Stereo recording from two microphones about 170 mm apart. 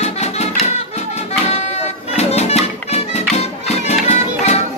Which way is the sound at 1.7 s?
40° left (ahead or behind).